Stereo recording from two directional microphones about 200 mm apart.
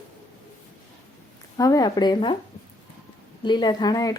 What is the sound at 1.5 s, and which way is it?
Speech, 15° left (ahead or behind).